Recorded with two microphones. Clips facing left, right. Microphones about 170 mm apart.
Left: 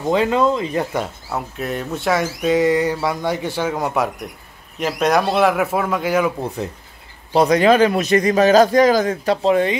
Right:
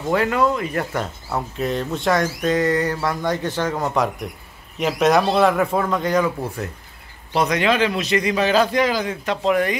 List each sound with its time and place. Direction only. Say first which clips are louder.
0.1 s speech: left 2 dB; 20° left (ahead or behind)
0.9 s speech: left 1 dB; 5° left (ahead or behind)
6.4 s speech: left 3 dB; 20° left (ahead or behind)
7.3 s a man's voice: left 6 dB; 35° left (ahead or behind)